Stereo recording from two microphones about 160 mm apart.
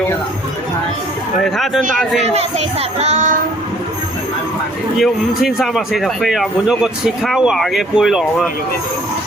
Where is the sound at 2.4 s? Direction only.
40° right (ahead or behind).